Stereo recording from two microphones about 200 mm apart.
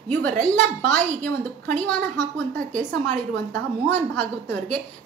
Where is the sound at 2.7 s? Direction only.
40° right (ahead or behind).